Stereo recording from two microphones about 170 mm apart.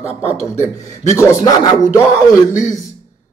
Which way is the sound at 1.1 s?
20° left (ahead or behind).